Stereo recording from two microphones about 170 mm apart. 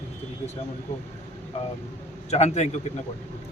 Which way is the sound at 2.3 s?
40° left (ahead or behind).